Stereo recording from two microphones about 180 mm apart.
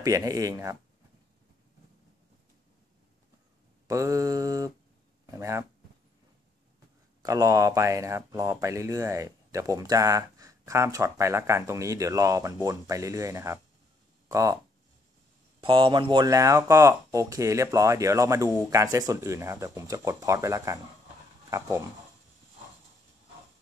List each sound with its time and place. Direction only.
0.0 s mantra: 20° right (ahead or behind)
3.8 s mantra: 20° right (ahead or behind)
5.2 s speech: 15° right (ahead or behind)
7.2 s speech: 20° right (ahead or behind)
15.6 s speech: 25° right (ahead or behind)